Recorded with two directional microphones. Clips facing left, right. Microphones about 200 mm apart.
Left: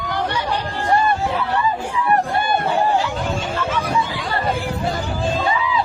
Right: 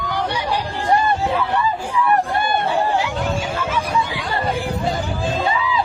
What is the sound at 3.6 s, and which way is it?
Chatter, 10° right (ahead or behind).